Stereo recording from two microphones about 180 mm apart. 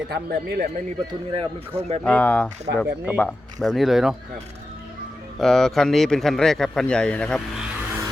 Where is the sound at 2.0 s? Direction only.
5° left (ahead or behind).